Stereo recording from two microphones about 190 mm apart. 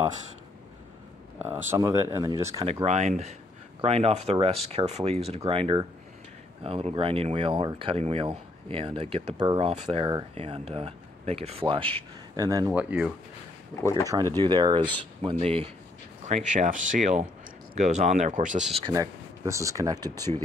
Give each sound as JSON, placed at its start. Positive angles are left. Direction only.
{"t": 1.4, "sound": "speech", "side_deg": -10}
{"t": 2.6, "sound": "speech", "side_deg": -35}
{"t": 13.8, "sound": "speech", "side_deg": -20}
{"t": 16.5, "sound": "speech", "side_deg": -45}
{"t": 18.9, "sound": "speech", "side_deg": -15}
{"t": 20.3, "sound": "speech", "side_deg": -30}